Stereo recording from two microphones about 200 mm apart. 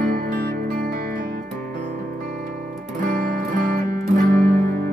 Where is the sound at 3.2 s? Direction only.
50° right (ahead or behind).